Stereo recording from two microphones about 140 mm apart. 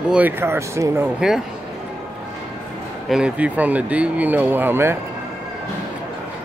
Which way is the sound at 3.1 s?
10° right (ahead or behind).